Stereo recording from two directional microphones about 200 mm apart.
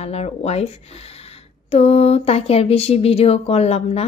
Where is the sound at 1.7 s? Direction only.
30° left (ahead or behind).